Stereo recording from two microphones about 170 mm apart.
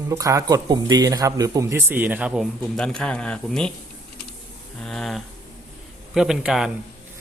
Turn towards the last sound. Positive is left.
turn(degrees=-5)  # may be behind; listen again after turning